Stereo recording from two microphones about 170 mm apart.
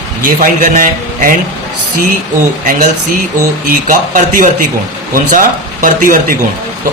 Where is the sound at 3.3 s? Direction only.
50° right (ahead or behind).